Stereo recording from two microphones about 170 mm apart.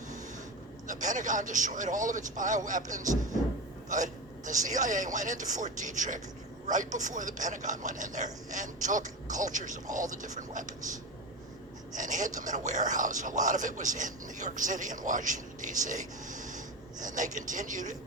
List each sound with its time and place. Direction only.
0.9 s speech: 50° right (ahead or behind)
11.9 s speech: 50° right (ahead or behind)